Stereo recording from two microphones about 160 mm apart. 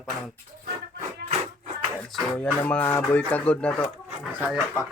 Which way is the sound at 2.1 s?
10° left (ahead or behind).